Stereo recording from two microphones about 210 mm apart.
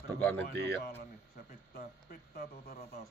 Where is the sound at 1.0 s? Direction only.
45° left (ahead or behind).